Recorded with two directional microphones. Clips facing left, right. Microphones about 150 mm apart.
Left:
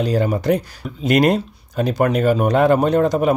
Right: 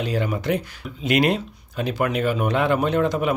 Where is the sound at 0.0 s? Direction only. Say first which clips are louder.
Left 6 dB; 40° left (ahead or behind).